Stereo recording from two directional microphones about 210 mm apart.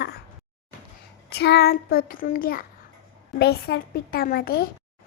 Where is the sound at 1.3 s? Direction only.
50° left (ahead or behind).